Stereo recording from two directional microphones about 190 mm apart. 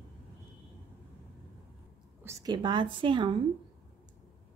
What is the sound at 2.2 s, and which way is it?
A woman's voice, 15° right (ahead or behind).